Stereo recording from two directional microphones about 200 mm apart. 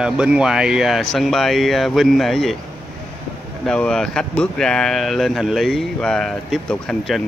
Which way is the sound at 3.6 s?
5° left (ahead or behind).